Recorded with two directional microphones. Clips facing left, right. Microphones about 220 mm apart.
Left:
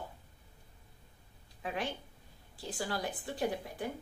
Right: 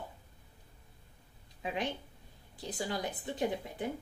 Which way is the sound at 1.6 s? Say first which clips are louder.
Right 2 dB; 20° right (ahead or behind).